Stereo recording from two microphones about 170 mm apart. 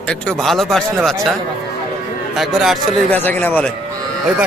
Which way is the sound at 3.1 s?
10° left (ahead or behind).